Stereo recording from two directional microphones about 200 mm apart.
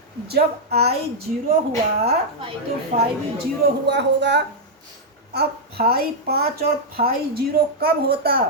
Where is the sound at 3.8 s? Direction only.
60° right (ahead or behind).